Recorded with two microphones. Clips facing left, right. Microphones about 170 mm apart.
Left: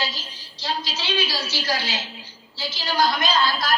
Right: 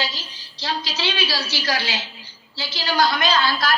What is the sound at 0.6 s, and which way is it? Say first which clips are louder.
A woman's voice: right 3 dB; 75° right (ahead or behind).